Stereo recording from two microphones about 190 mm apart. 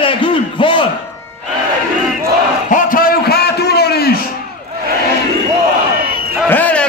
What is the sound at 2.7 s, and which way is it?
A man's voice, 45° left (ahead or behind).